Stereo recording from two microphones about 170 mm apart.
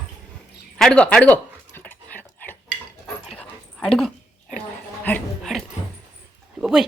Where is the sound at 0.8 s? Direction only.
5° left (ahead or behind).